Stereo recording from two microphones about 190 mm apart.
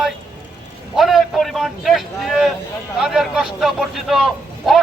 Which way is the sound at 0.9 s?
Centre (ahead or behind).